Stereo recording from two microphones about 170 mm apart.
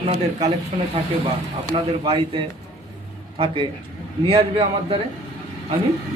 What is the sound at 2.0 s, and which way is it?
Speech, 30° right (ahead or behind).